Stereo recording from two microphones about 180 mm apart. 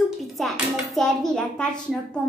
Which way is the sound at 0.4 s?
Centre (ahead or behind).